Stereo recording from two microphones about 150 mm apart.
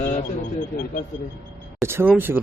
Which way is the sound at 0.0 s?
60° left (ahead or behind).